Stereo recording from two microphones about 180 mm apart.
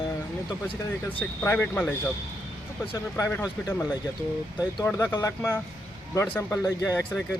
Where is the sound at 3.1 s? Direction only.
15° left (ahead or behind).